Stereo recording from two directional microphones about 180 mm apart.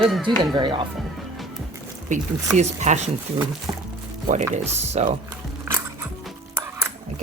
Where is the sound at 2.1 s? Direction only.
45° right (ahead or behind).